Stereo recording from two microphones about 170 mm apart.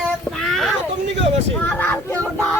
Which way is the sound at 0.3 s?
Centre (ahead or behind).